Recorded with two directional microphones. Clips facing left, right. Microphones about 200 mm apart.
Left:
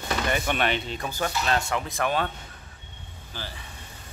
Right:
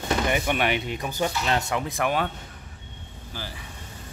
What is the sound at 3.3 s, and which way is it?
Speech, 10° right (ahead or behind).